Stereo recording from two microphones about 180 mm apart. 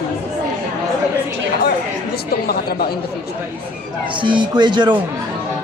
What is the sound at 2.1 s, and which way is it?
Speech, 60° left (ahead or behind).